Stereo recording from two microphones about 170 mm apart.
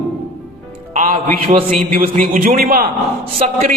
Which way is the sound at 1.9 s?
55° right (ahead or behind).